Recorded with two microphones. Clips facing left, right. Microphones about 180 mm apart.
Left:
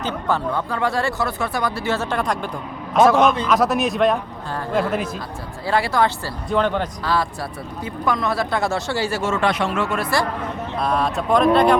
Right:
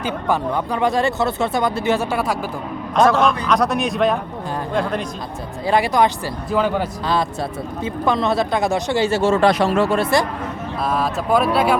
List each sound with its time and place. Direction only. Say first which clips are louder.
0.0 s speech: right 2 dB; 15° right (ahead or behind); by 5.0 s 5° left (ahead or behind)
5.6 s speech: right 3 dB; 20° right (ahead or behind)
6.5 s speech: right 1 dB; 5° right (ahead or behind)
7.0 s speech: right 2 dB; 20° right (ahead or behind)
10.8 s speech: even; centre (ahead or behind)